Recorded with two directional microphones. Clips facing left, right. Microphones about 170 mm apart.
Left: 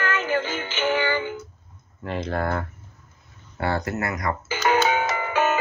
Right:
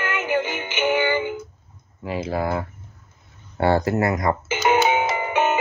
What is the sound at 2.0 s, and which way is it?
Speech, 5° right (ahead or behind).